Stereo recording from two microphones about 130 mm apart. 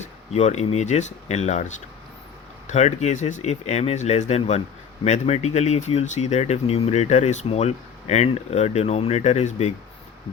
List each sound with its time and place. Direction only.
0.0 s speech: 55° left (ahead or behind)